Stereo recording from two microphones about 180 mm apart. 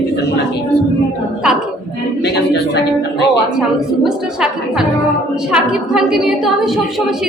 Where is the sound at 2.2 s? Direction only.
70° left (ahead or behind).